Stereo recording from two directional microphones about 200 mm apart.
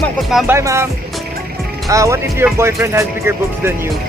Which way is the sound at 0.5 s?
15° right (ahead or behind).